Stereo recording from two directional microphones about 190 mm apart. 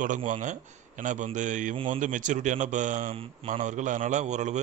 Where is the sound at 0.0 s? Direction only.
40° right (ahead or behind).